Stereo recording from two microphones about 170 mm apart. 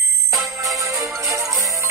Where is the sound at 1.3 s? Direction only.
20° right (ahead or behind).